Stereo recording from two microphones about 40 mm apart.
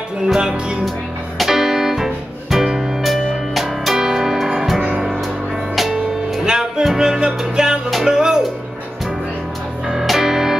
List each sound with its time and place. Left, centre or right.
0.3 s music: centre
6.4 s music: centre
10.0 s music: centre